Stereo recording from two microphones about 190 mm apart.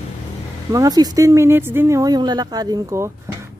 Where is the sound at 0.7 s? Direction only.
20° right (ahead or behind).